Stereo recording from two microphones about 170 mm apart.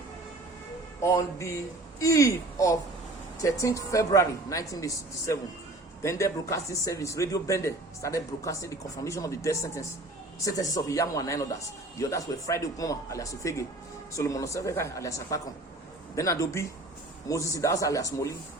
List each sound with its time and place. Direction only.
1.0 s a woman's voice: 15° left (ahead or behind)